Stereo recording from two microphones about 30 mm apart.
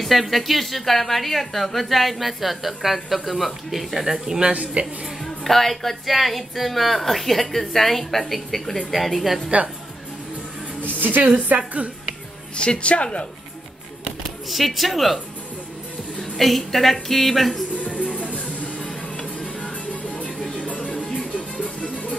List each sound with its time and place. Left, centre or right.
0.0 s a woman's voice: centre
4.4 s a woman's voice: right
5.2 s a woman's voice: centre
11.0 s a woman's voice: right
11.2 s a woman's voice: right
12.5 s speech: left
14.5 s a woman's voice: centre
16.2 s a woman's voice: centre
18.0 s music: right
20.5 s music: left